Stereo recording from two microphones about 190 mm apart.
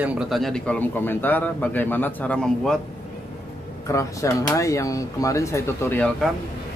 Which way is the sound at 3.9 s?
15° left (ahead or behind).